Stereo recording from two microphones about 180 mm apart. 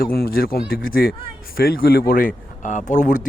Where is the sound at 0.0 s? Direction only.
55° left (ahead or behind).